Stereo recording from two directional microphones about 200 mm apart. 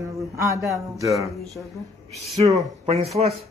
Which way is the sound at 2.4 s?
25° right (ahead or behind).